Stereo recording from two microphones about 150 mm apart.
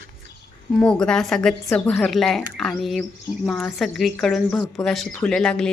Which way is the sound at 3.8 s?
Centre (ahead or behind).